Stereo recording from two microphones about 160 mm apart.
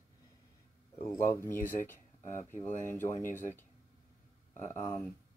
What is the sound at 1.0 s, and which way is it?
Speech, 15° left (ahead or behind).